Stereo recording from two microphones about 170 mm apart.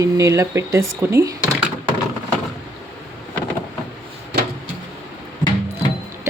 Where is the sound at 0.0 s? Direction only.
20° right (ahead or behind).